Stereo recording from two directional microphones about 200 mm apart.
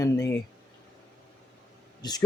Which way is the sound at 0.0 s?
15° left (ahead or behind).